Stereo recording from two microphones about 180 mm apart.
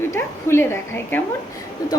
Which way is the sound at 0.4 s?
15° left (ahead or behind).